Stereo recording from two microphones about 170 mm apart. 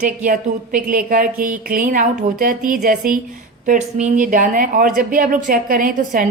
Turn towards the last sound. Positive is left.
turn(degrees=-55)  # may be behind; listen again after turning